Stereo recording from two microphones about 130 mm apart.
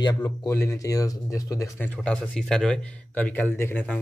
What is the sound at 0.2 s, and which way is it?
Speech, 20° left (ahead or behind).